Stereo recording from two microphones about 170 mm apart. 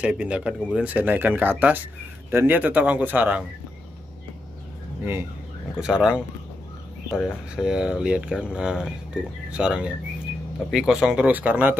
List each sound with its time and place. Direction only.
0.0 s speech: 5° right (ahead or behind)
5.8 s speech: 5° right (ahead or behind)
7.5 s speech: 5° right (ahead or behind)